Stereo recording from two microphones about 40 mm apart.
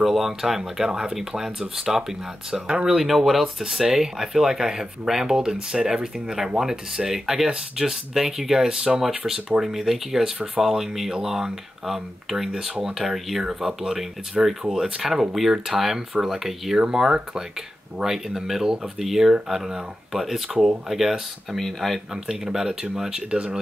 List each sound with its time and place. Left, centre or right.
0.0 s speech: centre
13.4 s speech: centre
18.0 s speech: centre
21.5 s speech: centre
22.1 s speech: centre
23.3 s speech: right